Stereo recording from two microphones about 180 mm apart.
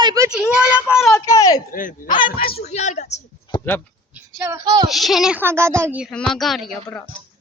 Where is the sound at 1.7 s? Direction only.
50° left (ahead or behind).